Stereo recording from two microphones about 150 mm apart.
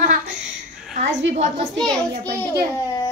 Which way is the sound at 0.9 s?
55° right (ahead or behind).